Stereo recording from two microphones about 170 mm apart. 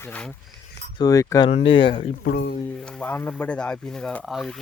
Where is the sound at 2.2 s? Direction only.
90° left.